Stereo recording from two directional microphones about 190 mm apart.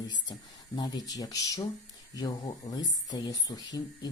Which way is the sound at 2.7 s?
20° left (ahead or behind).